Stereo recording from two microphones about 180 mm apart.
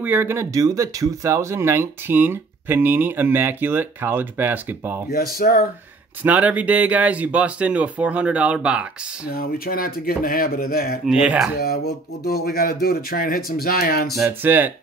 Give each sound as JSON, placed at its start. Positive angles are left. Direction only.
{"t": 0.0, "sound": "speech", "side_deg": -10}
{"t": 5.1, "sound": "speech", "side_deg": 55}
{"t": 6.2, "sound": "speech", "side_deg": -10}
{"t": 9.3, "sound": "speech", "side_deg": 55}
{"t": 11.1, "sound": "speech", "side_deg": -5}
{"t": 11.5, "sound": "speech", "side_deg": 60}
{"t": 14.2, "sound": "speech", "side_deg": -10}